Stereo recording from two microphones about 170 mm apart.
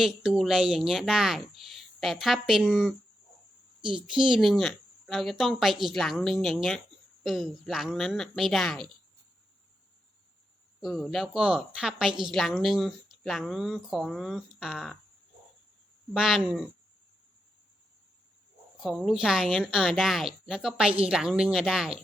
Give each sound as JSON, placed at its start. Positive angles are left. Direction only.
{"t": 0.0, "sound": "a woman's voice", "side_deg": 0}
{"t": 3.8, "sound": "speech", "side_deg": -30}
{"t": 4.0, "sound": "a woman's voice", "side_deg": -5}
{"t": 10.8, "sound": "a woman's voice", "side_deg": 0}
{"t": 16.1, "sound": "a woman's voice", "side_deg": -5}
{"t": 18.8, "sound": "a woman's voice", "side_deg": 0}